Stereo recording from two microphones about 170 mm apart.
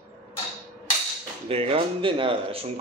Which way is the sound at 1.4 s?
35° right (ahead or behind).